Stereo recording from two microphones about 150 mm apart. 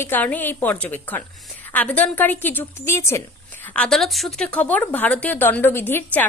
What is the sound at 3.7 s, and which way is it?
A woman's voice, 5° left (ahead or behind).